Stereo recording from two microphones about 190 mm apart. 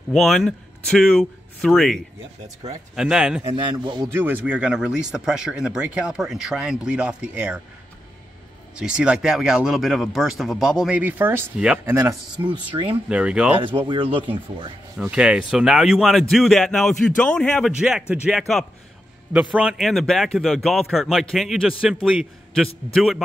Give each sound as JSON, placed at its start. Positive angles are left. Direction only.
{"t": 0.1, "sound": "speech", "side_deg": 0}
{"t": 3.0, "sound": "speech", "side_deg": -5}
{"t": 3.6, "sound": "speech", "side_deg": -25}
{"t": 4.1, "sound": "speech", "side_deg": -10}
{"t": 8.7, "sound": "speech", "side_deg": -5}
{"t": 11.9, "sound": "speech", "side_deg": -15}
{"t": 13.1, "sound": "speech", "side_deg": -5}
{"t": 13.8, "sound": "speech", "side_deg": -25}
{"t": 15.0, "sound": "a man's voice", "side_deg": -5}